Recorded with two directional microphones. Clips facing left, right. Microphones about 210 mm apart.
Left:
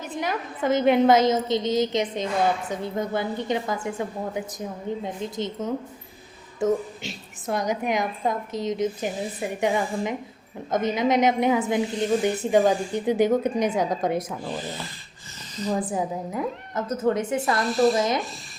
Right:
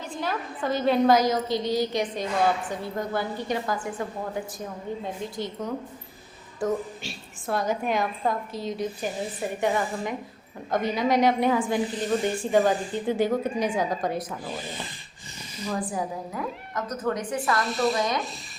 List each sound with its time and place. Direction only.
0.1 s a woman's voice: 20° left (ahead or behind)
15.9 s a woman's voice: 20° left (ahead or behind)
17.6 s speech: centre (ahead or behind)
17.9 s a woman's voice: 25° left (ahead or behind)